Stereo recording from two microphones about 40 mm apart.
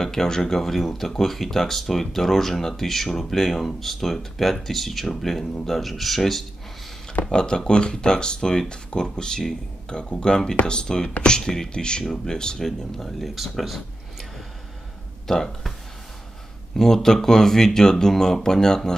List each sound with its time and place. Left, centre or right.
0.0 s speech: centre
5.4 s speech: left
5.7 s speech: centre
7.2 s speech: centre
12.6 s speech: centre
15.2 s speech: centre
16.7 s speech: centre